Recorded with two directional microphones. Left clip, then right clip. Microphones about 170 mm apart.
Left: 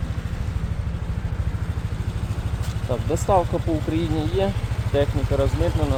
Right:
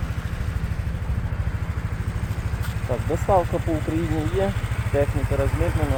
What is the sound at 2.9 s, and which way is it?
Speech, 5° left (ahead or behind).